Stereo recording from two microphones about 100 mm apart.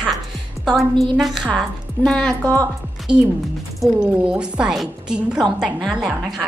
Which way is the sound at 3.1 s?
5° right (ahead or behind).